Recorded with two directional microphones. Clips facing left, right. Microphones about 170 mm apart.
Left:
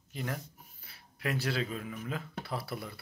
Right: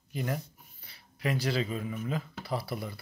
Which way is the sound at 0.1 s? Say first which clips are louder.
Right 4 dB; 5° right (ahead or behind).